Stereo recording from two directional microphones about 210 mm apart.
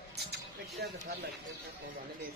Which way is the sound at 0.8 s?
50° right (ahead or behind).